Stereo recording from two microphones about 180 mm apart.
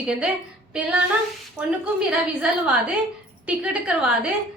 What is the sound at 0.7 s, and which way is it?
A woman's voice, 5° right (ahead or behind).